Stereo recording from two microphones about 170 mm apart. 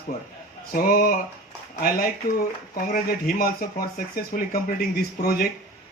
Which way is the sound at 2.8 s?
60° left (ahead or behind).